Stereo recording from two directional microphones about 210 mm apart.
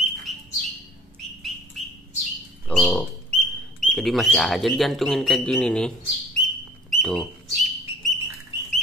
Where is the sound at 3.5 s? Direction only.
Centre (ahead or behind).